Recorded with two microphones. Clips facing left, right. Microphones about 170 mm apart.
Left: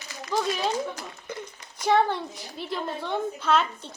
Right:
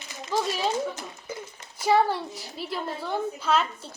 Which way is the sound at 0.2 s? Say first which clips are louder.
Even; 20° right (ahead or behind).